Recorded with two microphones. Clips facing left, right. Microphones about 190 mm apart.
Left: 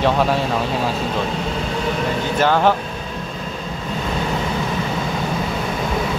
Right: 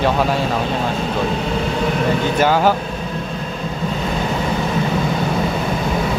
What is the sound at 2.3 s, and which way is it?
Speech, 10° right (ahead or behind).